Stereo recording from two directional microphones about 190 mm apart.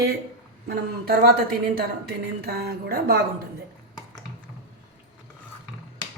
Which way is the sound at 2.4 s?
55° right (ahead or behind).